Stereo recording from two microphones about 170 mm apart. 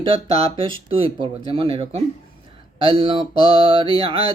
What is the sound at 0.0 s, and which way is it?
Mantra, 30° right (ahead or behind).